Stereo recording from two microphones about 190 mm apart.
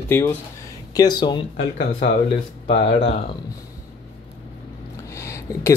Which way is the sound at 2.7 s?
35° left (ahead or behind).